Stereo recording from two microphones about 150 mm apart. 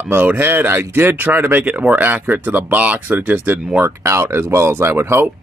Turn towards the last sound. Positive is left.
turn(degrees=-15)  # may be behind; listen again after turning